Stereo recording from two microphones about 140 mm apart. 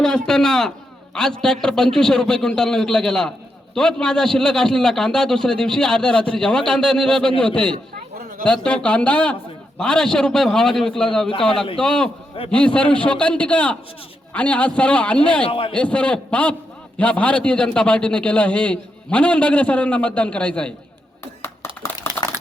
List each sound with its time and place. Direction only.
0.0 s a man's voice: 5° left (ahead or behind)
15.4 s a man's voice: 40° left (ahead or behind)
15.7 s a man's voice: 10° left (ahead or behind)
21.4 s a sound: 15° left (ahead or behind)